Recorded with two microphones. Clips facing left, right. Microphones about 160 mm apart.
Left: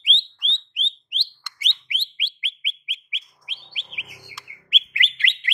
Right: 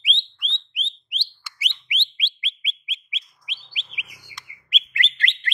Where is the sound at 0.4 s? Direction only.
5° right (ahead or behind).